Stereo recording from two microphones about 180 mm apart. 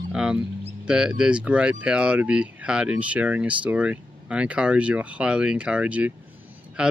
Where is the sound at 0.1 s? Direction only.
5° right (ahead or behind).